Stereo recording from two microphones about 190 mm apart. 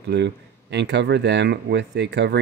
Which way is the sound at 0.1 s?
65° right (ahead or behind).